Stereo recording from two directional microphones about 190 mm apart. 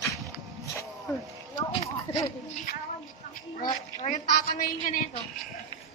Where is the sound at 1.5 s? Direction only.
20° left (ahead or behind).